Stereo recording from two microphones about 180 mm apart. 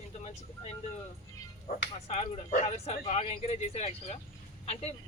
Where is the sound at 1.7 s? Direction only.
50° left (ahead or behind).